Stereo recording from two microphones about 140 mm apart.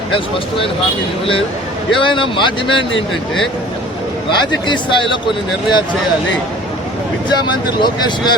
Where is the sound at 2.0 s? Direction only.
35° left (ahead or behind).